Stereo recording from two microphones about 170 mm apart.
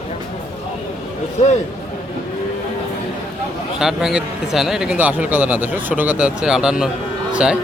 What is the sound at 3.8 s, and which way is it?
A man's voice, centre (ahead or behind).